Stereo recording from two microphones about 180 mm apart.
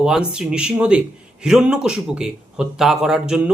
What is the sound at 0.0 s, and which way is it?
Speech, 5° right (ahead or behind).